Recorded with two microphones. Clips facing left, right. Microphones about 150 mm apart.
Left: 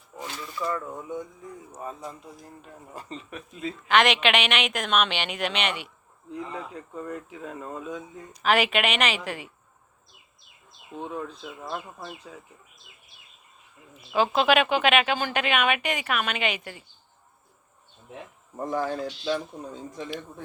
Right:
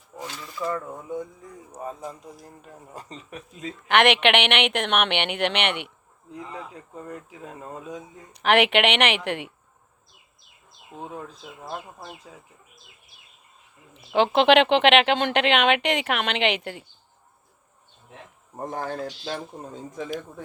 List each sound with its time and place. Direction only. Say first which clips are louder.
0.2 s a sound: right 1 dB; 35° right (ahead or behind)
1.7 s a man's voice: right 4 dB; 30° right (ahead or behind)
3.8 s a woman's voice: right 3 dB; 60° right (ahead or behind)
6.9 s a man's voice: left 3 dB; 35° right (ahead or behind)
8.3 s speech: right 3 dB; 65° right (ahead or behind)
14.2 s speech: right 4 dB; 65° right (ahead or behind)
18.6 s speech: left 2 dB; 50° right (ahead or behind)